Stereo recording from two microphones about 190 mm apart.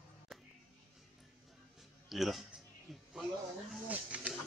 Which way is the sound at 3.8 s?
5° right (ahead or behind).